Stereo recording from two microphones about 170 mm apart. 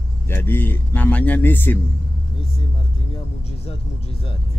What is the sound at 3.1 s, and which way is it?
Speech, 35° left (ahead or behind).